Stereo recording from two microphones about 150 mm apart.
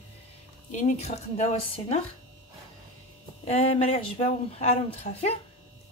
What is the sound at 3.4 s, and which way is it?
Speech, 40° left (ahead or behind).